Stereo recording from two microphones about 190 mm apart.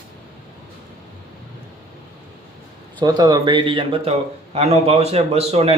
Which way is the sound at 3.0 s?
20° right (ahead or behind).